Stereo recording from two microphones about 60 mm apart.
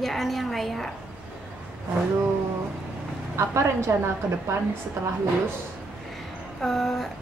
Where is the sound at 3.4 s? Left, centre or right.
Right.